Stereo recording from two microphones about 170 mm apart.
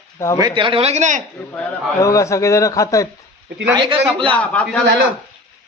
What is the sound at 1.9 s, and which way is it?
A man's voice, 20° left (ahead or behind).